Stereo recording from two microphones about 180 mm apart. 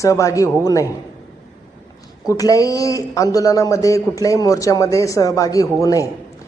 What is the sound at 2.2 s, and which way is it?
Speech, 20° left (ahead or behind).